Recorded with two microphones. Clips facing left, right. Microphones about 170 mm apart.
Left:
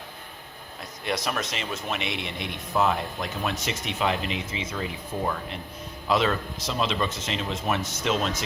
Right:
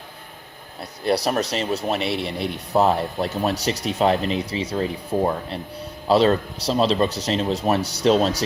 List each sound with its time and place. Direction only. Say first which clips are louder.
0.8 s speech: right 8 dB; 35° right (ahead or behind)